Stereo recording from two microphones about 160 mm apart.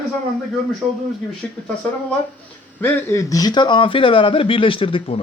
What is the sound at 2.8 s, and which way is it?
Speech, 15° left (ahead or behind).